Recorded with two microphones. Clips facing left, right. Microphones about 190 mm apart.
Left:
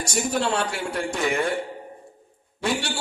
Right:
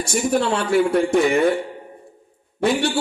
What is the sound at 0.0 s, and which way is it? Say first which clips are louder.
A man's voice: right 5 dB; 60° right (ahead or behind).